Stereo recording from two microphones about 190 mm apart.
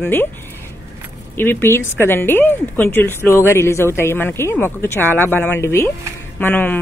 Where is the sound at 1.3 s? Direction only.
10° left (ahead or behind).